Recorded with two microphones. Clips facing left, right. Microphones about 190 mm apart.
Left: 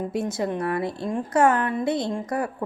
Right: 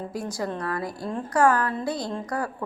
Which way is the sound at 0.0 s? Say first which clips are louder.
Left 4 dB; 25° left (ahead or behind).